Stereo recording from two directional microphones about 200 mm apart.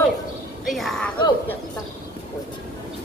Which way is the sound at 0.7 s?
Centre (ahead or behind).